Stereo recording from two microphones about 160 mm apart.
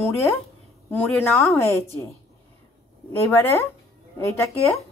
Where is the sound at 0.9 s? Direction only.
10° left (ahead or behind).